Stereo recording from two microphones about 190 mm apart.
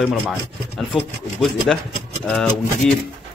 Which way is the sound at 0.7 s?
Centre (ahead or behind).